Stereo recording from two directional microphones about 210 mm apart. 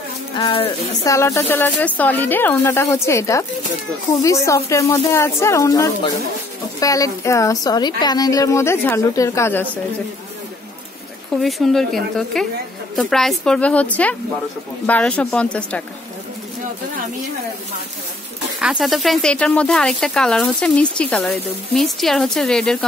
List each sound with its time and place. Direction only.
0.4 s speech: 20° left (ahead or behind)
11.4 s speech: centre (ahead or behind)
18.6 s speech: 5° right (ahead or behind)